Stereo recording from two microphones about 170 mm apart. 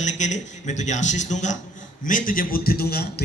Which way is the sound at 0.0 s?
45° left (ahead or behind).